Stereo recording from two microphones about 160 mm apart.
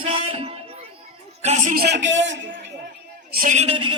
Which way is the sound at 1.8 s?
90° right.